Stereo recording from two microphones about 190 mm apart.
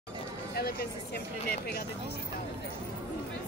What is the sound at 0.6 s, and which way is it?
Speech, 55° left (ahead or behind).